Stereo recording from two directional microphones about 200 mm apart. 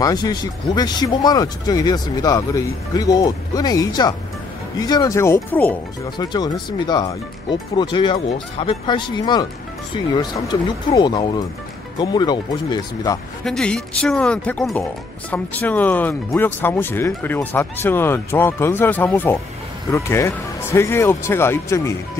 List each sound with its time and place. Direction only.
0.0 s speech: 20° left (ahead or behind)
6.1 s speech: 20° left (ahead or behind)
13.4 s speech: 5° left (ahead or behind)